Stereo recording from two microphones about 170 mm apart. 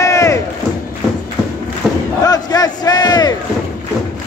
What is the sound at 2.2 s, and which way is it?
Speech, 20° left (ahead or behind).